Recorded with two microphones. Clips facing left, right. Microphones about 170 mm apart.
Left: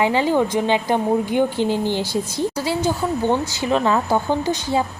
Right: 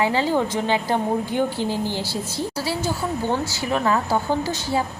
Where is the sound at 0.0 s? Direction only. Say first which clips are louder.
Left 3 dB; 20° left (ahead or behind).